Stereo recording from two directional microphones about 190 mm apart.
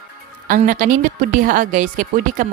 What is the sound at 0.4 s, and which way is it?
Speech, 45° right (ahead or behind).